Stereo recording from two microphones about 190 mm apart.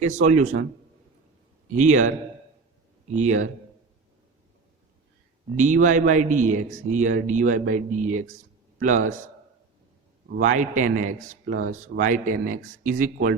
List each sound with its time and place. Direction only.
0.0 s a man's voice: 40° right (ahead or behind)
1.6 s a man's voice: 40° right (ahead or behind)
5.5 s a man's voice: 40° right (ahead or behind)
10.4 s a man's voice: 40° right (ahead or behind)